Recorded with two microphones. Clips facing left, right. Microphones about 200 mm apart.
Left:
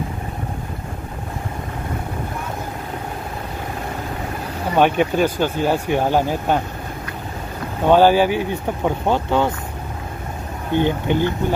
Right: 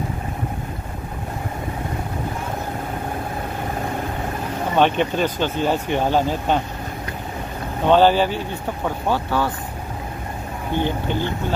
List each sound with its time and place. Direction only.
4.7 s speech: 10° left (ahead or behind)
7.8 s speech: 10° left (ahead or behind)
10.8 s speech: 15° left (ahead or behind)